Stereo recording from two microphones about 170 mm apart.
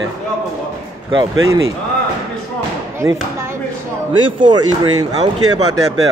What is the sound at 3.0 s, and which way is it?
Speech, 15° right (ahead or behind).